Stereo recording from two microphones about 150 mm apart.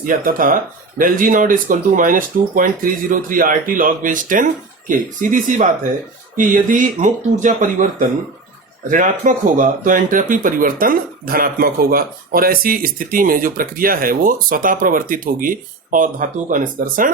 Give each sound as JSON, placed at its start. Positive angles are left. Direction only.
{"t": 0.0, "sound": "speech", "side_deg": -65}